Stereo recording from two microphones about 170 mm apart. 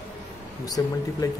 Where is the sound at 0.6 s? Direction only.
20° left (ahead or behind).